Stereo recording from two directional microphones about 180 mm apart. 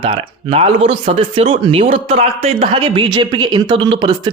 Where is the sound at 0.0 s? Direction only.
30° right (ahead or behind).